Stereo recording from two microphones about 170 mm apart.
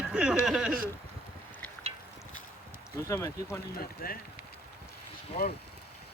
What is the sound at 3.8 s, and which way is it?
Speech, 60° left (ahead or behind).